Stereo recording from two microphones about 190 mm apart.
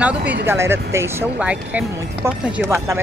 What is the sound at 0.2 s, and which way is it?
Speech, 65° right (ahead or behind).